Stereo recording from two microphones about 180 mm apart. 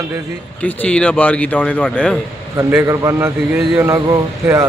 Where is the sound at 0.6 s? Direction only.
10° left (ahead or behind).